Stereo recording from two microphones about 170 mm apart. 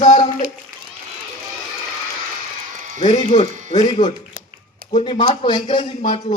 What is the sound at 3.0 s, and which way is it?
A man's voice, 45° left (ahead or behind).